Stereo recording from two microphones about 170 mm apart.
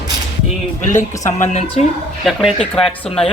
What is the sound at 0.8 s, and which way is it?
Speech, 45° left (ahead or behind).